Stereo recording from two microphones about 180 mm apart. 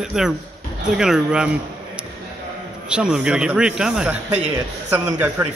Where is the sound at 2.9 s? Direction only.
5° right (ahead or behind).